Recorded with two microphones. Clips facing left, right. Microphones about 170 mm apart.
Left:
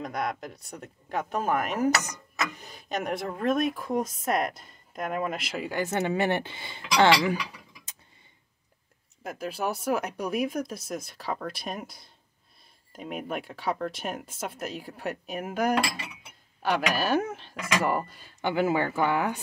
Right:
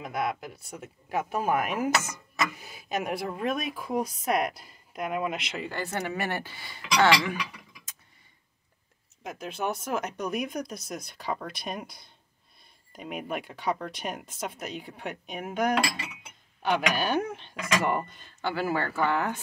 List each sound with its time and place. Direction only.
0.0 s speech: 5° right (ahead or behind)
5.9 s speech: 25° left (ahead or behind)
9.2 s speech: 5° left (ahead or behind)
16.9 s speech: centre (ahead or behind)
18.4 s speech: 20° left (ahead or behind)